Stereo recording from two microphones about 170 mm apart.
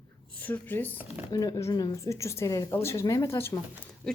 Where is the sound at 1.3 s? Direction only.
20° left (ahead or behind).